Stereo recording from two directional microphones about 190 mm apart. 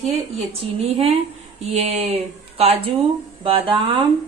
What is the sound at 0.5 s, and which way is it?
A woman's voice, 35° right (ahead or behind).